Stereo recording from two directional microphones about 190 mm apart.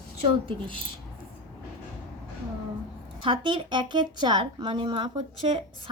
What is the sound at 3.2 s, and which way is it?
Speech, 25° right (ahead or behind).